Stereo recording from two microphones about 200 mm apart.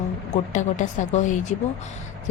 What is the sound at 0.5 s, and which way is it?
A woman's voice, 40° left (ahead or behind).